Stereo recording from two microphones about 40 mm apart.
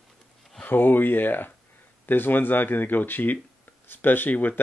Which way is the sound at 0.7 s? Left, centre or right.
Left.